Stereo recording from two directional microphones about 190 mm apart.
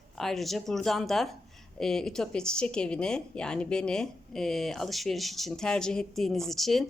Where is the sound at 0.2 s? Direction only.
Centre (ahead or behind).